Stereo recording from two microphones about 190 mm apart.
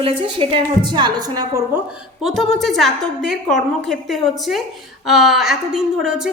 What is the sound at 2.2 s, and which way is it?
Speech, centre (ahead or behind).